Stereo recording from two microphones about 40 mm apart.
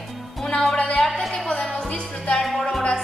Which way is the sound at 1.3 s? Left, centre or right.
Left.